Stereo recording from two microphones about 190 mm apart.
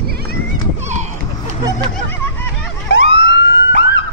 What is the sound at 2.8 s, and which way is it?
Police car, 70° left (ahead or behind).